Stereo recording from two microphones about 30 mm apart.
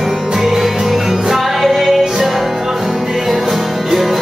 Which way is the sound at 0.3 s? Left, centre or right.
Centre.